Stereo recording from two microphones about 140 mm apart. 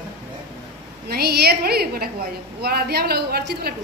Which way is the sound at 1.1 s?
90° right.